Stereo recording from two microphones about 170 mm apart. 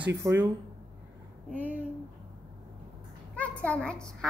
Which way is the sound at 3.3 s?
5° left (ahead or behind).